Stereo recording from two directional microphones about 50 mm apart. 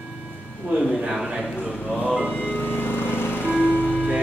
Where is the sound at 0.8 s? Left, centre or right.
Centre.